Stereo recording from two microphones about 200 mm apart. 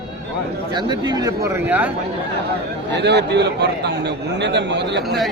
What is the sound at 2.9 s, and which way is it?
A man's voice, 60° right (ahead or behind).